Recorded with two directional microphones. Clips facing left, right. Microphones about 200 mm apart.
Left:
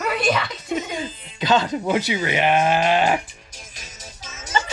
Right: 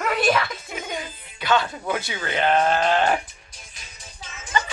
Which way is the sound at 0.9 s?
20° left (ahead or behind).